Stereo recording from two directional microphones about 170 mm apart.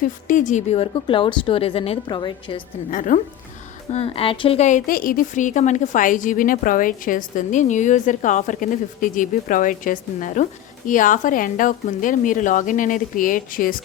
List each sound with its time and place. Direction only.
0.3 s a woman's voice: 50° left (ahead or behind); by 2.6 s 30° left (ahead or behind)
2.9 s a woman's voice: 50° left (ahead or behind)
3.9 s a woman's voice: 35° left (ahead or behind); by 13.8 s 55° left (ahead or behind)